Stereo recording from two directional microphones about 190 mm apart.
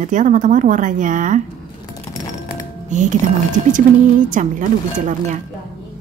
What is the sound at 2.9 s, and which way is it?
Speech, 40° right (ahead or behind).